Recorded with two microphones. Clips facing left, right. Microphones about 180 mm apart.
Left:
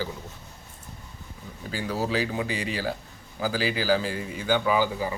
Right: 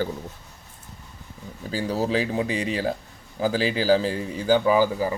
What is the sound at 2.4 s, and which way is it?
Speech, 30° right (ahead or behind).